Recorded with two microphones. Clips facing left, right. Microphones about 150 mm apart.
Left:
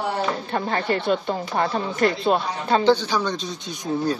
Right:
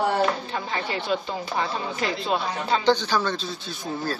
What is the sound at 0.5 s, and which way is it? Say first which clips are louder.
Speech: left 5 dB; 50° left (ahead or behind).